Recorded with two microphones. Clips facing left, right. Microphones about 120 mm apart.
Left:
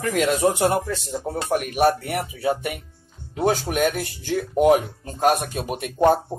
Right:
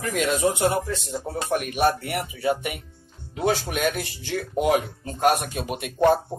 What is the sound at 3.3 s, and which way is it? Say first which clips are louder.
Speech: left 2 dB; 45° left (ahead or behind).